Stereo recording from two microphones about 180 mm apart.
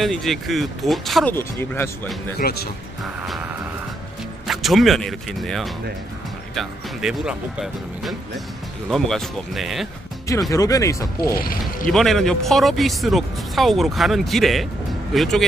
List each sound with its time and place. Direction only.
0.0 s speech: centre (ahead or behind)
1.3 s speech: 10° left (ahead or behind)
2.3 s speech: 60° left (ahead or behind)
3.2 s music: 5° right (ahead or behind)
4.5 s speech: centre (ahead or behind)
10.5 s speech: 20° left (ahead or behind)
11.3 s speech: 55° left (ahead or behind)
11.9 s speech: centre (ahead or behind)